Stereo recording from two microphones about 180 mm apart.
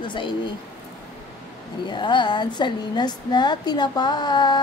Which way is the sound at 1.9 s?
25° left (ahead or behind).